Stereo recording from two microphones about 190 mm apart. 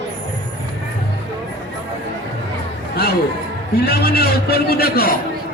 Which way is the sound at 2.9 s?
55° left (ahead or behind).